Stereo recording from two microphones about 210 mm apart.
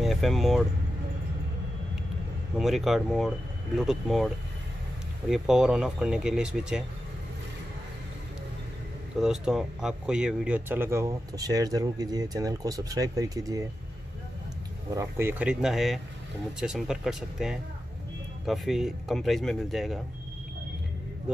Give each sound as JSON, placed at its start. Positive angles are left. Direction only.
{"t": 0.0, "sound": "speech", "side_deg": 0}
{"t": 2.6, "sound": "speech", "side_deg": 0}
{"t": 5.3, "sound": "speech", "side_deg": 0}
{"t": 9.2, "sound": "speech", "side_deg": -5}
{"t": 15.0, "sound": "speech", "side_deg": -10}